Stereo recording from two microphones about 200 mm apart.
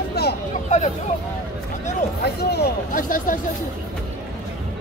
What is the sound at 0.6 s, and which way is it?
Speech, 35° left (ahead or behind).